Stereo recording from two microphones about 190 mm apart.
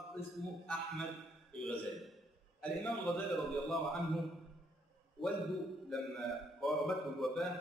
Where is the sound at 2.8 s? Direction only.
Centre (ahead or behind).